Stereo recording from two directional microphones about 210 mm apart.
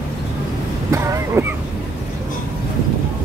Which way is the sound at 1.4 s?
15° right (ahead or behind).